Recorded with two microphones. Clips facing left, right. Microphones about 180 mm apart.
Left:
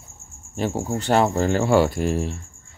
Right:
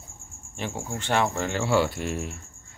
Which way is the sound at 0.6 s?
40° left (ahead or behind).